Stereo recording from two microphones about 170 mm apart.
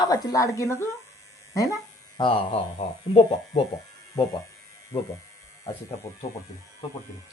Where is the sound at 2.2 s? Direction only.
30° left (ahead or behind).